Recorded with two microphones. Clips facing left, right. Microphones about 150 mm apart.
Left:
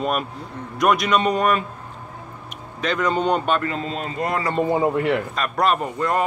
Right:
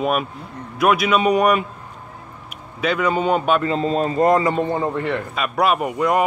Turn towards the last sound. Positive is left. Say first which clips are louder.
# right 3 dB
turn(degrees=-10)  # may be behind; listen again after turning